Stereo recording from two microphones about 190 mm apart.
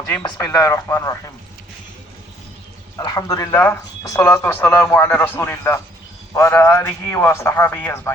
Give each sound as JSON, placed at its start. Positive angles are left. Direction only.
{"t": 0.1, "sound": "speech", "side_deg": 15}
{"t": 3.0, "sound": "speech", "side_deg": 20}